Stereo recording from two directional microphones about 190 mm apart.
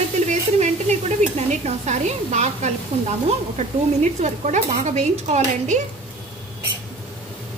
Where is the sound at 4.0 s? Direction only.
40° right (ahead or behind).